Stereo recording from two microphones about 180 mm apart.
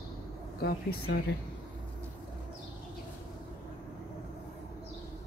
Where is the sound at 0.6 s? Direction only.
60° left (ahead or behind).